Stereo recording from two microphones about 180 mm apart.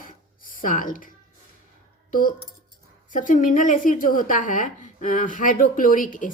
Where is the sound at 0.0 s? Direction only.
50° left (ahead or behind).